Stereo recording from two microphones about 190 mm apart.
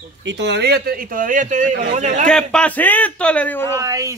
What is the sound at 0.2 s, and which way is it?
A man's voice, 70° right (ahead or behind).